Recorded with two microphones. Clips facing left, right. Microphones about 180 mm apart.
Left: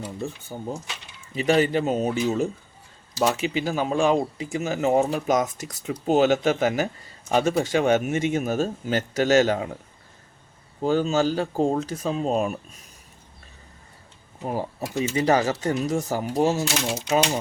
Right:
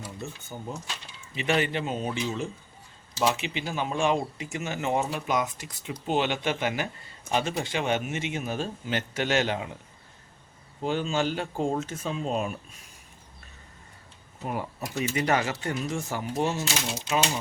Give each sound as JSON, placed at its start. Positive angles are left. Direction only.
{"t": 0.0, "sound": "speech", "side_deg": 35}
{"t": 10.8, "sound": "speech", "side_deg": 40}
{"t": 14.4, "sound": "speech", "side_deg": 35}